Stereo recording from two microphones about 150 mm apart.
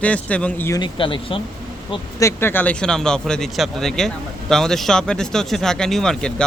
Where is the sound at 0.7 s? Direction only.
30° left (ahead or behind).